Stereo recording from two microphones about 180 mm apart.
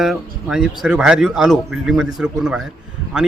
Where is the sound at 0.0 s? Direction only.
Centre (ahead or behind).